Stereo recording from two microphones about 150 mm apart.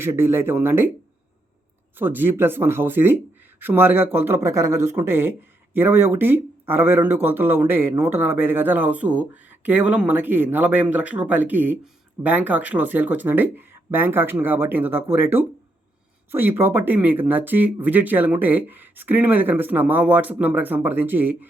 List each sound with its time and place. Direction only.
0.0 s a man's voice: 15° right (ahead or behind)
2.0 s a man's voice: 15° right (ahead or behind)